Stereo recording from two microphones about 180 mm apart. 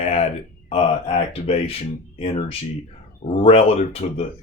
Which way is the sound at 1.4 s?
35° left (ahead or behind).